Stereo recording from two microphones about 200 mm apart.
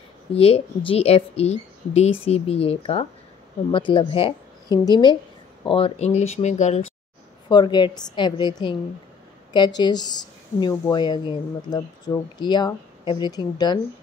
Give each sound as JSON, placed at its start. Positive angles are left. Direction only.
{"t": 0.3, "sound": "a woman's voice", "side_deg": 30}
{"t": 7.4, "sound": "speech", "side_deg": 20}